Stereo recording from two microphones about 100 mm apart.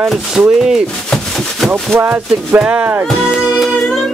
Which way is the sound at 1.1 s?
5° left (ahead or behind).